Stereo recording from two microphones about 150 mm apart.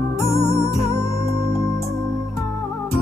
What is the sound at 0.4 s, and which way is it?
Music, 20° left (ahead or behind).